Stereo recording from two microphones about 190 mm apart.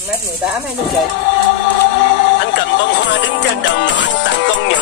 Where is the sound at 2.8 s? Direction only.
70° left (ahead or behind).